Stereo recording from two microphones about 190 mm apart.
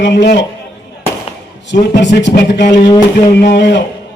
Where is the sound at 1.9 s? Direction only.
70° left (ahead or behind).